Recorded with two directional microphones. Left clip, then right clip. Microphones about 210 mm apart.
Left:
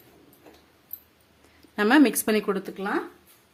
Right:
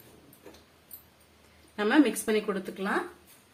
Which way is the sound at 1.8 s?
55° left (ahead or behind).